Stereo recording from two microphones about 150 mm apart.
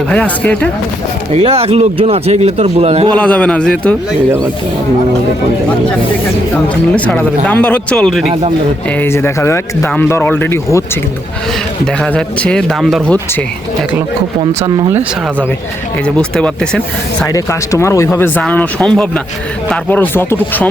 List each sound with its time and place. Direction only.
0.1 s speech: 10° left (ahead or behind)
1.3 s a man's voice: 45° right (ahead or behind)
3.2 s speech: 10° left (ahead or behind)
6.9 s speech: 10° left (ahead or behind)
8.3 s speech: 45° right (ahead or behind)
9.0 s speech: 15° left (ahead or behind)
12.0 s speech: 5° left (ahead or behind)
16.0 s speech: 5° left (ahead or behind)
17.2 s speech: 20° left (ahead or behind)